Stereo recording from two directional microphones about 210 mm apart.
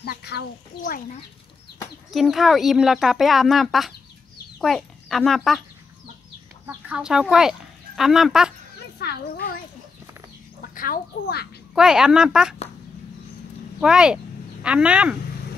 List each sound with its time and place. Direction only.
0.0 s speech: 50° left (ahead or behind)
2.0 s speech: centre (ahead or behind)
6.6 s speech: 10° right (ahead or behind)
9.0 s speech: 50° left (ahead or behind)
10.7 s speech: 40° left (ahead or behind)
11.7 s speech: 5° right (ahead or behind)
13.7 s speech: 5° right (ahead or behind)